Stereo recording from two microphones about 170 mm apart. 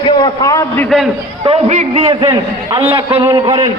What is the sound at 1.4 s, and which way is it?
A man's voice, 40° right (ahead or behind).